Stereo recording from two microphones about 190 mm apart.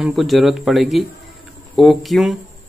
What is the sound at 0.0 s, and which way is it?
Speech, centre (ahead or behind).